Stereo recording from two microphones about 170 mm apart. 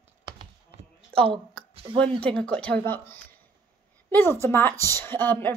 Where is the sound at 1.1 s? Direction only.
5° left (ahead or behind).